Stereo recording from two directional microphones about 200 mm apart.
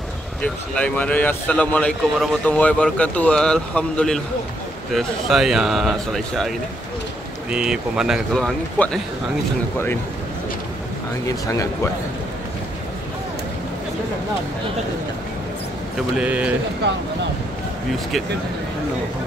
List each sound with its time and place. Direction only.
0.4 s speech: 5° left (ahead or behind)
7.5 s speech: 5° right (ahead or behind)
11.2 s speech: 15° left (ahead or behind)
16.2 s speech: 5° right (ahead or behind)